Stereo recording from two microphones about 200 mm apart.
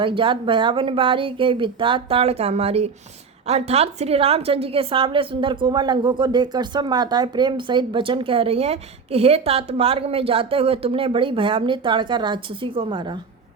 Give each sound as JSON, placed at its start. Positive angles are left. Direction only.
{"t": 0.0, "sound": "a woman's voice", "side_deg": -25}